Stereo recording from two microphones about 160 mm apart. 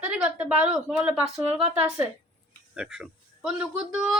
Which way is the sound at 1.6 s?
5° right (ahead or behind).